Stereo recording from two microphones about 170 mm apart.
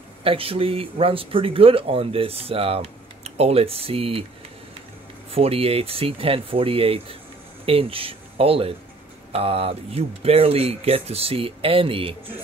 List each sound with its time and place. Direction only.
0.2 s speech: 35° right (ahead or behind)
5.3 s speech: 35° right (ahead or behind)